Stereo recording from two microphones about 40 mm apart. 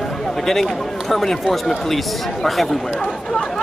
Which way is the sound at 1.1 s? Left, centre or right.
Centre.